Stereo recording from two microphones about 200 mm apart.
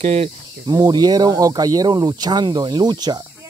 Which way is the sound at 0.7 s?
20° right (ahead or behind).